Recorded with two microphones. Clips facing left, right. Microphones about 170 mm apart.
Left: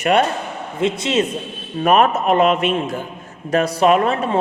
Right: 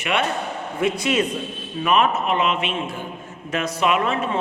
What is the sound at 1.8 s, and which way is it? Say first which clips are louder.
A man's voice: left 5 dB; 45° left (ahead or behind).